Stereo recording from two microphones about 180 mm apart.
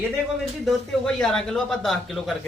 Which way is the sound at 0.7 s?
5° left (ahead or behind).